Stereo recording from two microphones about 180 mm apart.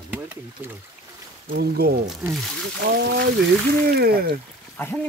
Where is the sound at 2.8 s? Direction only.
70° right (ahead or behind).